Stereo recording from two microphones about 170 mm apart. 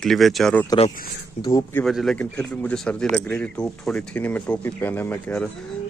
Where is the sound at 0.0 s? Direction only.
Centre (ahead or behind).